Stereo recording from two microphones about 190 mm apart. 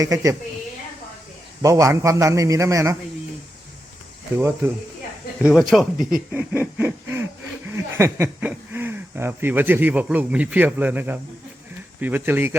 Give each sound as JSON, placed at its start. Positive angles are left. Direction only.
{"t": 0.0, "sound": "a man's voice", "side_deg": -15}
{"t": 1.6, "sound": "a man's voice", "side_deg": -15}
{"t": 4.4, "sound": "a man's voice", "side_deg": -10}
{"t": 5.4, "sound": "speech", "side_deg": 0}
{"t": 6.3, "sound": "snicker", "side_deg": -10}
{"t": 7.7, "sound": "a man's voice", "side_deg": -15}